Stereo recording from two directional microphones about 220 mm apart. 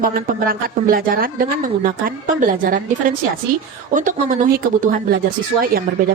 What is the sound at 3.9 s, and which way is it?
A woman's voice, 35° right (ahead or behind).